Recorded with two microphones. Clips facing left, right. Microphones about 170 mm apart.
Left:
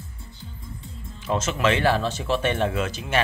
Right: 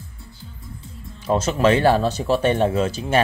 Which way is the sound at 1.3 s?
35° right (ahead or behind).